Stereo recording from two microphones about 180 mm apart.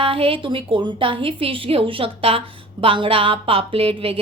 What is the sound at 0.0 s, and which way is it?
A woman's voice, 30° right (ahead or behind).